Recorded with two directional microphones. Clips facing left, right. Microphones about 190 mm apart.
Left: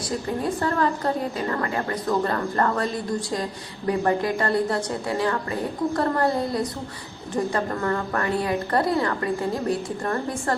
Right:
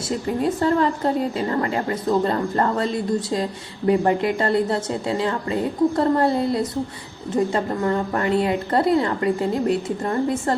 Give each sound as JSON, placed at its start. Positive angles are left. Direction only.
{"t": 0.4, "sound": "a woman's voice", "side_deg": -25}